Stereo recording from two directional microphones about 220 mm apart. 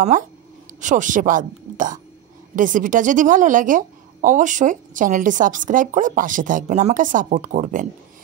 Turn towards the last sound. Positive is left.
turn(degrees=-35)  # may be behind; listen again after turning